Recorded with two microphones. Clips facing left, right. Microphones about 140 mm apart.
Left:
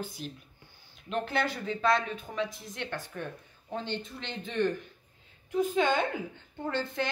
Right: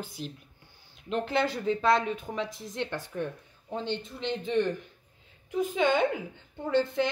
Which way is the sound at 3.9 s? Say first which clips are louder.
Right 5 dB; 15° right (ahead or behind).